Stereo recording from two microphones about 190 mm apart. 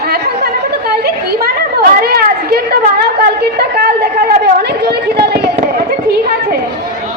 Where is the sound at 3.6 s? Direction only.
55° right (ahead or behind).